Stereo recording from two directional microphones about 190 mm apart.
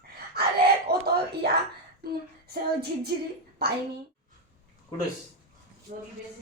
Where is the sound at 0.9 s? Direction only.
55° right (ahead or behind).